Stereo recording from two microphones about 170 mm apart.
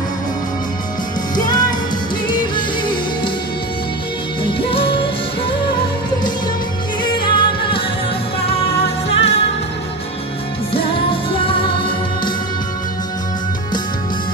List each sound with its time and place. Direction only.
1.3 s music: 25° left (ahead or behind)
4.4 s music: 30° left (ahead or behind)
7.0 s music: 25° left (ahead or behind)
9.1 s music: 35° left (ahead or behind)
10.7 s music: 30° left (ahead or behind)